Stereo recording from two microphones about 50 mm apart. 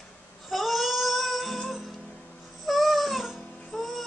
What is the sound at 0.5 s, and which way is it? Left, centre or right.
Music, centre.